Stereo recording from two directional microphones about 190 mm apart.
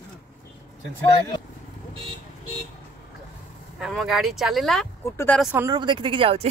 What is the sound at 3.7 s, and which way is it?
A woman's voice, centre (ahead or behind).